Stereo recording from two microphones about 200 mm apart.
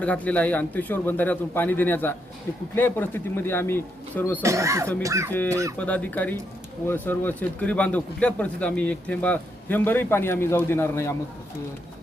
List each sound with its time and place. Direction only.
0.0 s a man's voice: 5° left (ahead or behind)
4.4 s speech: 15° right (ahead or behind)
5.8 s a man's voice: 5° left (ahead or behind)